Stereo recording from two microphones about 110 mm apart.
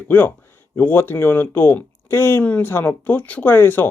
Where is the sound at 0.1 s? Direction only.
15° left (ahead or behind).